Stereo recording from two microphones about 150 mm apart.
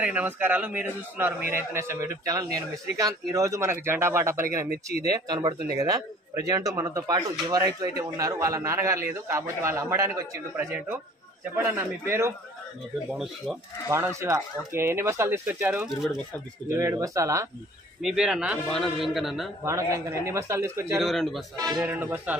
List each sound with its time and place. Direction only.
0.0 s a man's voice: 10° right (ahead or behind)
13.1 s a man's voice: centre (ahead or behind)
13.8 s a man's voice: 20° right (ahead or behind)
18.0 s a man's voice: 5° right (ahead or behind)
19.6 s a man's voice: 20° right (ahead or behind)
21.0 s a man's voice: centre (ahead or behind)
21.7 s a man's voice: 10° right (ahead or behind)